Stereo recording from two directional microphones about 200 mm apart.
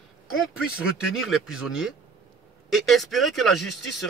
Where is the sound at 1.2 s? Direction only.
5° right (ahead or behind).